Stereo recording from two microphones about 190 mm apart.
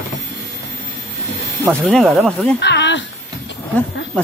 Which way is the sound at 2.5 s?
65° left (ahead or behind).